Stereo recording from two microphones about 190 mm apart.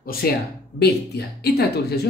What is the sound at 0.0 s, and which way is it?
Speech, 50° left (ahead or behind).